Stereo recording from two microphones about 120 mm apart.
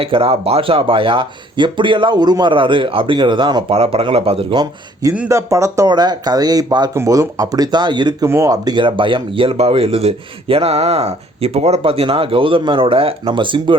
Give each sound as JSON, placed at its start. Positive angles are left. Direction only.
{"t": 0.0, "sound": "speech", "side_deg": -50}
{"t": 5.3, "sound": "speech", "side_deg": -25}
{"t": 8.3, "sound": "speech", "side_deg": -25}